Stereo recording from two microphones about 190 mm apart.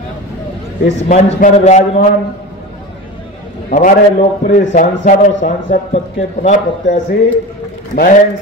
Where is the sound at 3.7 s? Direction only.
40° left (ahead or behind).